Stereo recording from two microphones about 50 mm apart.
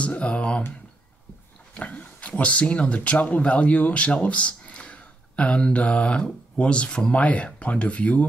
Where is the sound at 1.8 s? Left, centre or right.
Left.